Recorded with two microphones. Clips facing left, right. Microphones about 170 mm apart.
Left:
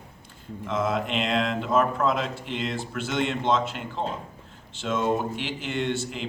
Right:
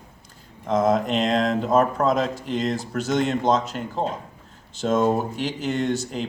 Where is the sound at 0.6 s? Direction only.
40° right (ahead or behind).